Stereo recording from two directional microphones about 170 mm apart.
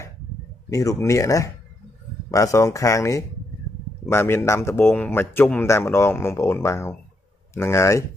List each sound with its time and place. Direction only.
0.7 s a man's voice: 20° left (ahead or behind)